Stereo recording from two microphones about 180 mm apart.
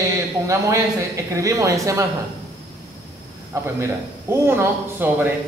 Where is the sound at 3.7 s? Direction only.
15° right (ahead or behind).